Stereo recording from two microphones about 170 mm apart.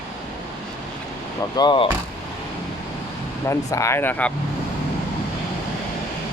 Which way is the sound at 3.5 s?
15° left (ahead or behind).